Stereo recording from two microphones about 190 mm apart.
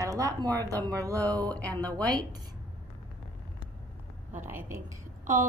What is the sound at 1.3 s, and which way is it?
Speech, 5° left (ahead or behind).